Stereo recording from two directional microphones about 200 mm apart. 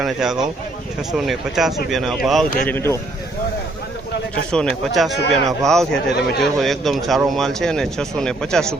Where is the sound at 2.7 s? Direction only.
10° left (ahead or behind).